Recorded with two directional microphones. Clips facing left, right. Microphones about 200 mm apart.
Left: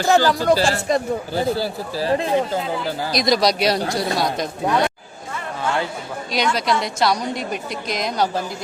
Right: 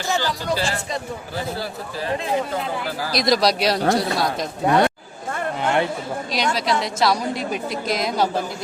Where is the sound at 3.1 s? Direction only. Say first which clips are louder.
Even; centre (ahead or behind).